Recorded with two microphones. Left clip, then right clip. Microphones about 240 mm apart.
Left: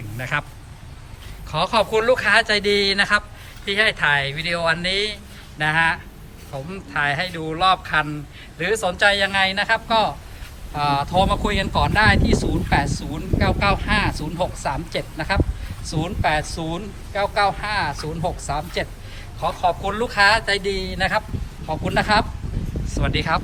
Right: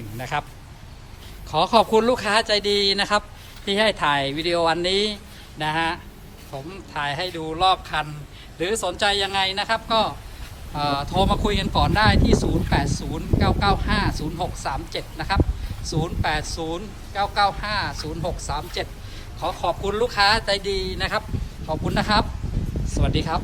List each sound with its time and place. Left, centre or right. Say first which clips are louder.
0.2 s speech: left 2 dB; centre
1.5 s a man's voice: right 2 dB; centre
23.0 s a sound: left 3 dB; centre